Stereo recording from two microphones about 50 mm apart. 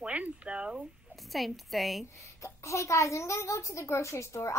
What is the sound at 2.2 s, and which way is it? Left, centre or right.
A woman's voice, left.